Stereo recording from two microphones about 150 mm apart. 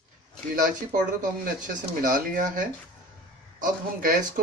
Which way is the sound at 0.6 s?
65° right (ahead or behind).